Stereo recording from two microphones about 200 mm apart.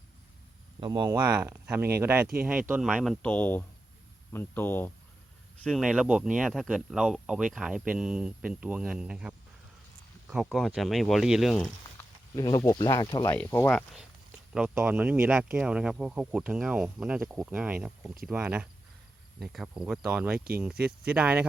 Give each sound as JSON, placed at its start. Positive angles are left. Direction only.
{"t": 0.8, "sound": "speech", "side_deg": -20}
{"t": 5.6, "sound": "speech", "side_deg": 0}
{"t": 11.9, "sound": "speech", "side_deg": 20}
{"t": 13.3, "sound": "speech", "side_deg": 10}
{"t": 14.5, "sound": "speech", "side_deg": -5}